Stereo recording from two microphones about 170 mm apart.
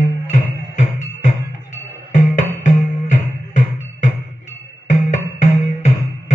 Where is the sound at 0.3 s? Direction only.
45° left (ahead or behind).